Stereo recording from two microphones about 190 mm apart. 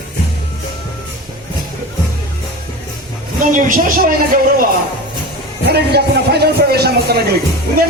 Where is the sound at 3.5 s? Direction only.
45° right (ahead or behind).